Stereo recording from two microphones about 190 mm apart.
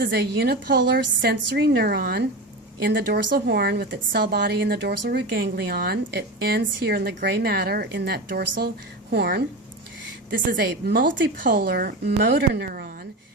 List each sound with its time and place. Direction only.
0.0 s a woman's voice: 55° right (ahead or behind)
10.5 s speech: 55° right (ahead or behind)